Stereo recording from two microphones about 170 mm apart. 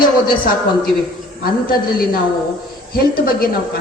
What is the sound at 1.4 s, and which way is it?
A woman's voice, 60° left (ahead or behind).